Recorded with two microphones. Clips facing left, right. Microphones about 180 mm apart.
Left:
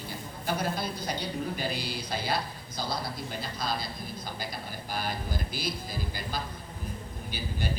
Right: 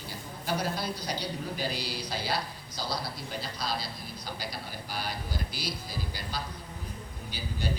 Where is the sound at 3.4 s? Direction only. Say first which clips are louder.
Even; 50° left (ahead or behind).